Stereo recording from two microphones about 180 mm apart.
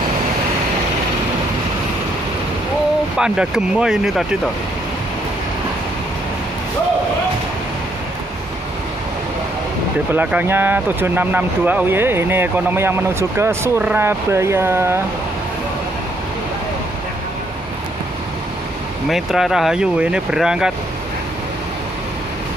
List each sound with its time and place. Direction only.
3.2 s speech: 5° right (ahead or behind)
10.1 s speech: 10° right (ahead or behind)
19.0 s speech: centre (ahead or behind)